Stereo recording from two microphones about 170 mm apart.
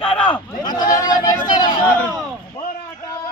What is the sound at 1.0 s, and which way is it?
Speech, 20° left (ahead or behind).